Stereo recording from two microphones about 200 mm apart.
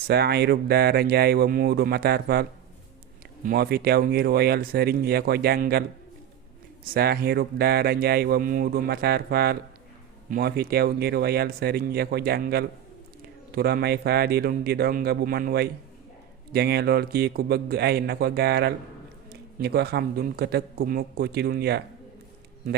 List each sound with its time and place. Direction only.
0.1 s speech: 50° right (ahead or behind)
6.8 s speech: 50° right (ahead or behind)